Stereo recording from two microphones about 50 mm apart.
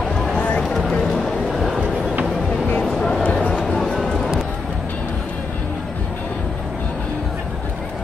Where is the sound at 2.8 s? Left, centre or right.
Centre.